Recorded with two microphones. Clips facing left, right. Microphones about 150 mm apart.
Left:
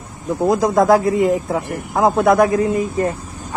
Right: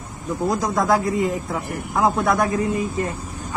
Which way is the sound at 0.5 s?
40° left (ahead or behind).